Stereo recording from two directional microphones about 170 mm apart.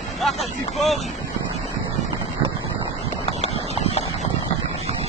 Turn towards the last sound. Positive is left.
turn(degrees=40)  # may be behind; listen again after turning